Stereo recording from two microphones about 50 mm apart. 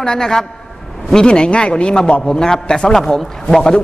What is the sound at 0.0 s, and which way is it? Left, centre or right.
A man's voice, centre.